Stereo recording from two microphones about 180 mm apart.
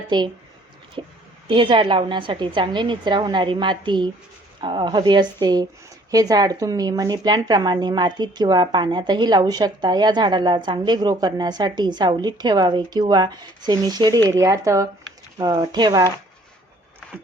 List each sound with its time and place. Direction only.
0.1 s speech: 25° right (ahead or behind)